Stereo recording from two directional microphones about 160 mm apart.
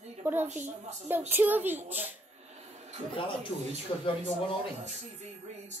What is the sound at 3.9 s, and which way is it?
Speech, 35° left (ahead or behind).